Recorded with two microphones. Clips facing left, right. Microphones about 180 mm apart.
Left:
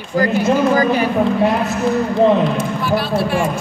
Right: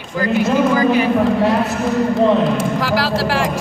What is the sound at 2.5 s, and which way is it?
Speech, 90° right.